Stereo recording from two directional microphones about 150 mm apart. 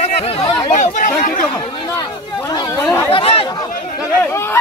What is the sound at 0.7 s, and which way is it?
Speech, 55° left (ahead or behind).